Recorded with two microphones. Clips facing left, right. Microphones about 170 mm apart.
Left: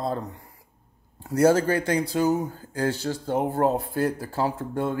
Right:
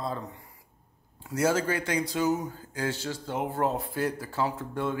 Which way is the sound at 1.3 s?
35° left (ahead or behind).